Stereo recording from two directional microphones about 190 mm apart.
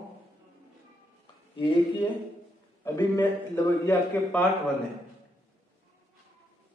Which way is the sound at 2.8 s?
10° left (ahead or behind).